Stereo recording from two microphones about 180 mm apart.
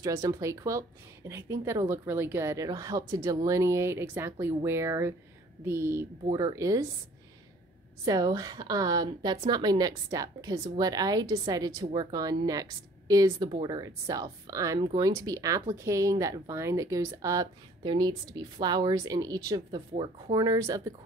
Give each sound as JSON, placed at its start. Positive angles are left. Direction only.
{"t": 0.0, "sound": "a woman's voice", "side_deg": -20}
{"t": 8.0, "sound": "a woman's voice", "side_deg": -20}